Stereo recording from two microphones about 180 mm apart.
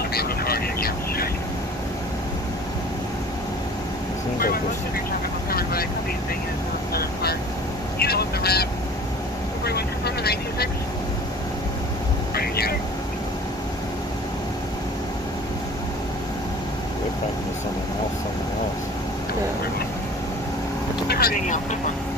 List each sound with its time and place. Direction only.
0.1 s vehicle: 60° left (ahead or behind)
5.5 s vehicle: 55° left (ahead or behind)
6.9 s vehicle: 60° left (ahead or behind)
9.7 s vehicle: 60° left (ahead or behind)
12.4 s vehicle: 60° left (ahead or behind)
21.1 s vehicle: 55° left (ahead or behind)